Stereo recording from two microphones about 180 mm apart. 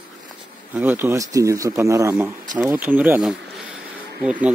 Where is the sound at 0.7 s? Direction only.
10° right (ahead or behind).